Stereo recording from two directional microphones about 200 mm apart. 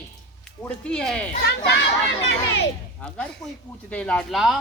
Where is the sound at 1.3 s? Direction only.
55° left (ahead or behind).